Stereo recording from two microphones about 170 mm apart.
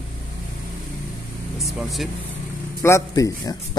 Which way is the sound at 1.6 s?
Centre (ahead or behind).